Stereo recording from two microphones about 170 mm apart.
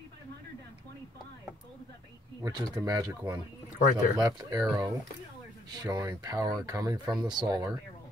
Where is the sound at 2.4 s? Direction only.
20° right (ahead or behind).